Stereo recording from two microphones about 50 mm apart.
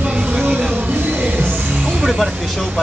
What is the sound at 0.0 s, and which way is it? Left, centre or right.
Vehicle, right.